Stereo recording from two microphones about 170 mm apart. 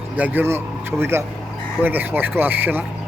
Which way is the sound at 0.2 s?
10° right (ahead or behind).